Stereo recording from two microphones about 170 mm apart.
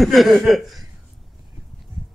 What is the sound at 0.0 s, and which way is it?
Speech, centre (ahead or behind).